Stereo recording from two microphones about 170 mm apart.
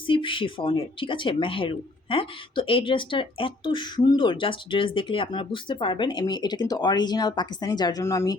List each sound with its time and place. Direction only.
0.1 s speech: 30° left (ahead or behind)